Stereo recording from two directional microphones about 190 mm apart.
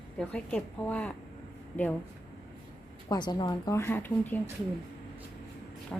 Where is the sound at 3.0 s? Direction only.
20° left (ahead or behind).